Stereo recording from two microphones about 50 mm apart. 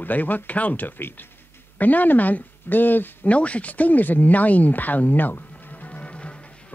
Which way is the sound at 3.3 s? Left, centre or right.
Left.